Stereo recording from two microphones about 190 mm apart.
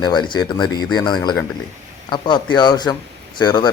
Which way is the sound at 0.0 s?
25° left (ahead or behind).